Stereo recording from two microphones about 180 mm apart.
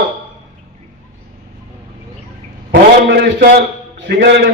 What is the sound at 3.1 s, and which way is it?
A man's voice, 75° right (ahead or behind).